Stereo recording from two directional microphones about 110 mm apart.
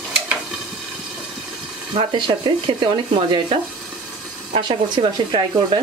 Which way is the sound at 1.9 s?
45° right (ahead or behind).